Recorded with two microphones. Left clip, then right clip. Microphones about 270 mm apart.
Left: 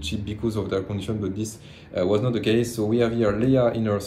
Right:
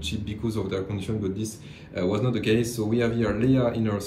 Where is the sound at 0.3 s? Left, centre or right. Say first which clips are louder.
Left 4 dB; centre.